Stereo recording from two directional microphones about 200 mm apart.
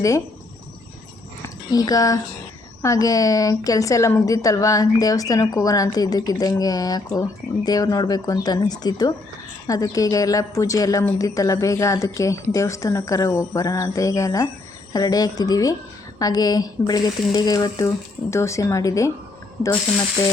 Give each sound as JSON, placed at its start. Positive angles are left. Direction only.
{"t": 1.7, "sound": "a woman's voice", "side_deg": 20}